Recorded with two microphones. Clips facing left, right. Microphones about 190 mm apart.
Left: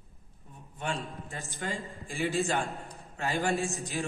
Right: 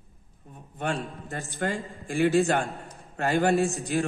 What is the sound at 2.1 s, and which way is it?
A man's voice, 55° right (ahead or behind).